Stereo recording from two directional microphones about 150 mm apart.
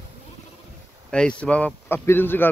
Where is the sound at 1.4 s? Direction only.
10° left (ahead or behind).